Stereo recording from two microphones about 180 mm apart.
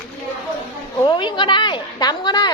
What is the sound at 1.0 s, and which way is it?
Speech, 25° left (ahead or behind).